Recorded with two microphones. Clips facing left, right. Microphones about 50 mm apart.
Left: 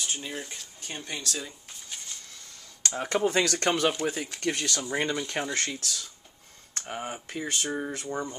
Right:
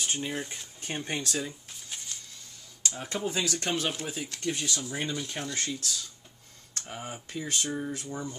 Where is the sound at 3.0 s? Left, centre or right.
Left.